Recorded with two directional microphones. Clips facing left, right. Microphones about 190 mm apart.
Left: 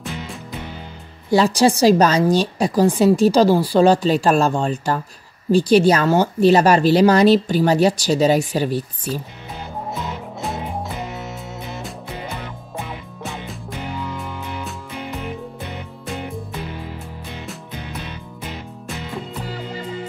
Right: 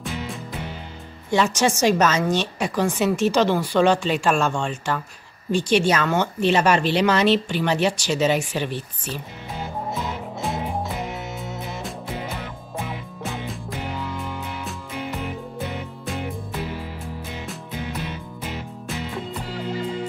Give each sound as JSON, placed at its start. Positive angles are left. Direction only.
{"t": 0.0, "sound": "music", "side_deg": 0}
{"t": 1.3, "sound": "a woman's voice", "side_deg": 35}
{"t": 10.4, "sound": "music", "side_deg": 0}
{"t": 13.2, "sound": "music", "side_deg": 0}